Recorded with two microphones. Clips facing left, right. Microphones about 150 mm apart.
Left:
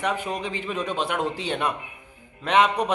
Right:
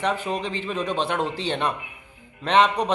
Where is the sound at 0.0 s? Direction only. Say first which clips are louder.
Right 2 dB; 10° left (ahead or behind).